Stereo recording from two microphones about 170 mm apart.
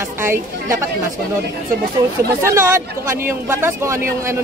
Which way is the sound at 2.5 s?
15° right (ahead or behind).